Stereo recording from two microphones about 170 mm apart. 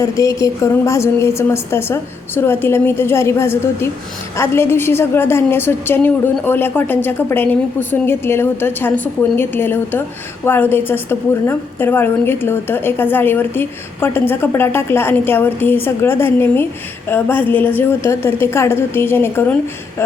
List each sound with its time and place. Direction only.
0.0 s a woman's voice: 20° left (ahead or behind)